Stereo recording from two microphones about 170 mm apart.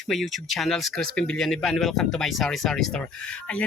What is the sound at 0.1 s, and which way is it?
Speech, centre (ahead or behind).